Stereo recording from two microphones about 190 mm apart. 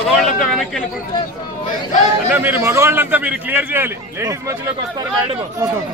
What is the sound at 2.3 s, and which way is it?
A man's voice, 10° right (ahead or behind).